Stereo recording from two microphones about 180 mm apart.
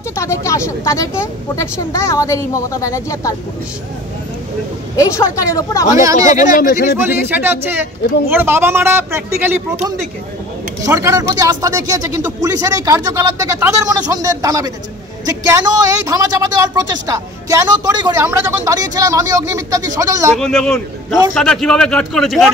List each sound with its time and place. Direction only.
0.1 s speech: 15° left (ahead or behind)
4.9 s speech: 15° left (ahead or behind)
6.5 s speech: 50° left (ahead or behind)
7.0 s a man's voice: 10° right (ahead or behind)
10.8 s speech: 15° right (ahead or behind)
20.3 s a man's voice: 5° left (ahead or behind)